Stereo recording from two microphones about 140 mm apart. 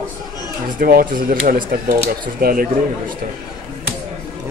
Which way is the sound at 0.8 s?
90° right.